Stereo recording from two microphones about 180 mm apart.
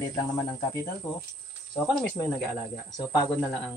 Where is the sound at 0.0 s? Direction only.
20° left (ahead or behind).